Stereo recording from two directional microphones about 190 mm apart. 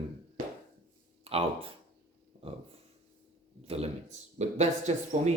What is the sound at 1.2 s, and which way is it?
Speech, 30° right (ahead or behind).